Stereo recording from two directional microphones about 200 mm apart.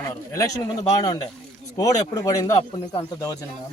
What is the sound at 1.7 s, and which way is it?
Speech, 20° left (ahead or behind).